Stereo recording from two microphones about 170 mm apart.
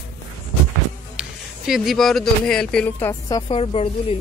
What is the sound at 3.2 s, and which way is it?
Speech, 30° left (ahead or behind).